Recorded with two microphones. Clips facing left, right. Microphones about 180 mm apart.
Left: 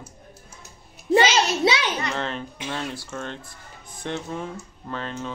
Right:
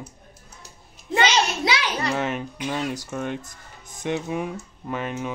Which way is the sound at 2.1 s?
15° right (ahead or behind).